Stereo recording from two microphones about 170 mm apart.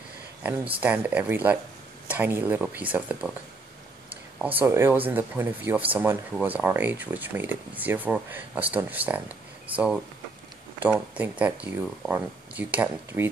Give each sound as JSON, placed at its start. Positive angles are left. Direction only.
{"t": 0.7, "sound": "speech", "side_deg": -10}
{"t": 4.4, "sound": "speech", "side_deg": -10}
{"t": 10.8, "sound": "speech", "side_deg": -10}